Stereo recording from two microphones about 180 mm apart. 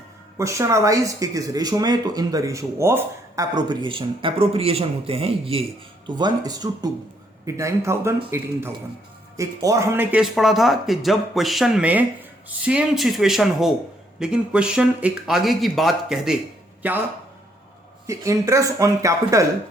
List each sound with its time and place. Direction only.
0.3 s speech: 15° right (ahead or behind)
18.0 s speech: 15° right (ahead or behind)